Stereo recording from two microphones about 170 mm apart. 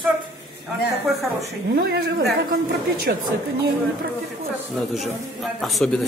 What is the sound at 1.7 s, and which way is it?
A woman's voice, 60° right (ahead or behind).